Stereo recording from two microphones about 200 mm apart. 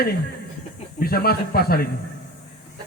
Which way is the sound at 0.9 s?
50° left (ahead or behind).